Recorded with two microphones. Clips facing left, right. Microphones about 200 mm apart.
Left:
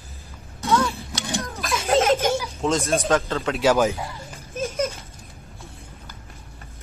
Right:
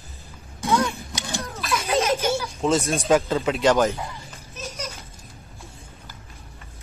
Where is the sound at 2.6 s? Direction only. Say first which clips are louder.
Right 2 dB; centre (ahead or behind).